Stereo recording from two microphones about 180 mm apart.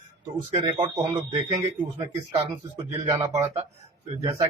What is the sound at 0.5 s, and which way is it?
Speech, 25° right (ahead or behind).